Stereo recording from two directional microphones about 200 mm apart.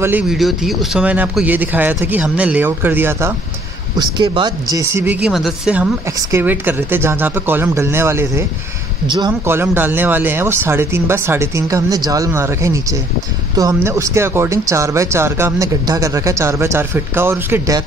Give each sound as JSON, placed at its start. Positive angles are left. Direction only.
{"t": 0.0, "sound": "speech", "side_deg": -5}
{"t": 9.0, "sound": "speech", "side_deg": -25}
{"t": 9.5, "sound": "speech", "side_deg": -10}